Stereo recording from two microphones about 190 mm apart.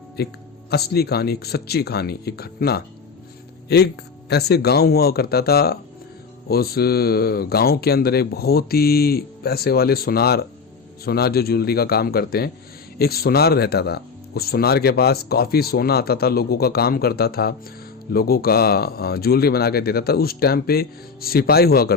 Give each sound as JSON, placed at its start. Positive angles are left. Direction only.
{"t": 0.2, "sound": "speech", "side_deg": 55}